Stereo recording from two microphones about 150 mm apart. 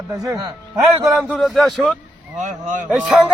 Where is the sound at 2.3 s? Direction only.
55° right (ahead or behind).